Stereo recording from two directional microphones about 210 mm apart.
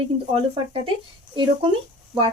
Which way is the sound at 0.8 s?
25° right (ahead or behind).